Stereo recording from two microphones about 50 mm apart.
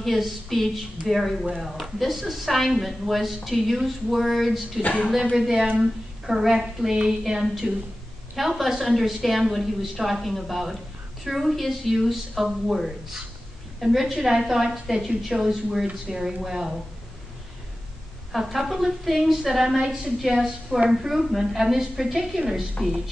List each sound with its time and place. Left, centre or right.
0.0 s a woman's voice: centre
4.8 s speech: left
5.3 s a woman's voice: centre
18.3 s a woman's voice: centre